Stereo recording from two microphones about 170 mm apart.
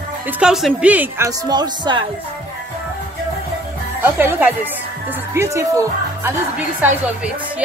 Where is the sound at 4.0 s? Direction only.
10° right (ahead or behind).